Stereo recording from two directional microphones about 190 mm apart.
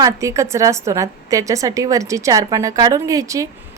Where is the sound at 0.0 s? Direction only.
15° right (ahead or behind).